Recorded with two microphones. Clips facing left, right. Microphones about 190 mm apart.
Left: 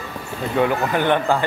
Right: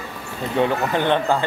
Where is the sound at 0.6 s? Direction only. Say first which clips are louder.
Left 1 dB; 25° right (ahead or behind).